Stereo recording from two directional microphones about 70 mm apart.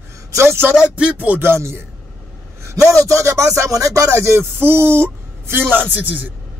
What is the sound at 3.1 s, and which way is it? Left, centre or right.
Music, right.